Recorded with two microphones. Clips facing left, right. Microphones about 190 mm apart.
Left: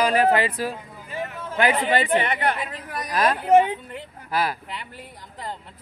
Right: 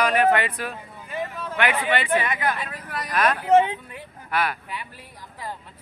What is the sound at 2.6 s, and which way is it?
Speech, 20° left (ahead or behind).